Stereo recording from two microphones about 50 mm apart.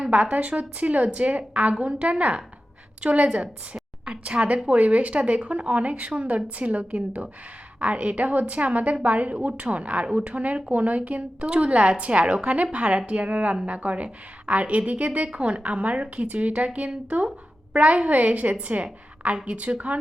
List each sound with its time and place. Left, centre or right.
0.1 s a woman's voice: right